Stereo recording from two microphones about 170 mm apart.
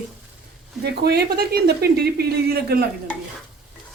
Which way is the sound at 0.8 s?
70° right (ahead or behind).